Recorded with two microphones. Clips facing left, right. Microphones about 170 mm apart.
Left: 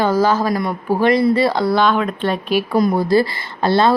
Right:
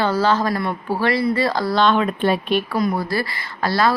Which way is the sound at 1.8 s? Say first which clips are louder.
Even; 5° left (ahead or behind).